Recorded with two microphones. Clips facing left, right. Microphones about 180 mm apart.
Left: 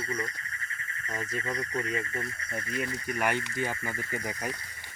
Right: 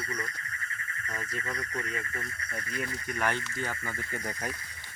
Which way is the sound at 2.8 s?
10° left (ahead or behind).